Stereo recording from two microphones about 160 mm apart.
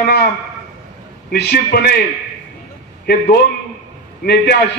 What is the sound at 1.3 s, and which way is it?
Speech, 80° left.